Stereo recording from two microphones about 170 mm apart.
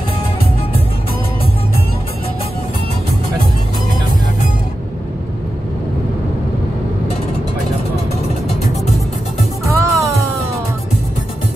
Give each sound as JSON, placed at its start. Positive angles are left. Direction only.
{"t": 9.7, "sound": "music", "side_deg": -15}